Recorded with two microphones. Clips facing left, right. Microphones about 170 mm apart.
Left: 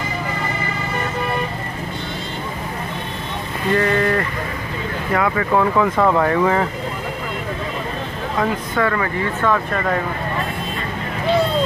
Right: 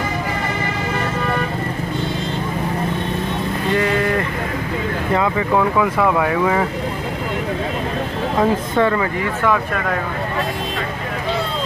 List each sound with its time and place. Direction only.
5.6 s speech: 5° right (ahead or behind)
8.4 s speech: 20° right (ahead or behind)